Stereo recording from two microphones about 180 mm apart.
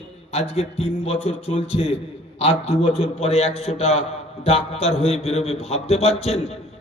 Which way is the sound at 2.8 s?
35° left (ahead or behind).